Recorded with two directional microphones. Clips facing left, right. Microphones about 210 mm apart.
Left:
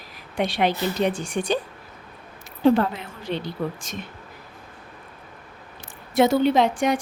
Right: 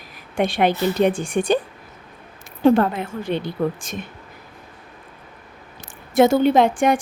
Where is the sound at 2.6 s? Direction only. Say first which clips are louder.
Right 3 dB; 55° right (ahead or behind).